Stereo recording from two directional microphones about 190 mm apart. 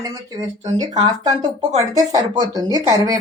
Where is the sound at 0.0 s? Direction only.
20° right (ahead or behind).